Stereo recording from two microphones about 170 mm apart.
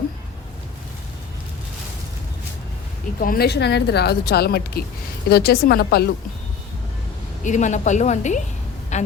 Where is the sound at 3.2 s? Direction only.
60° left (ahead or behind).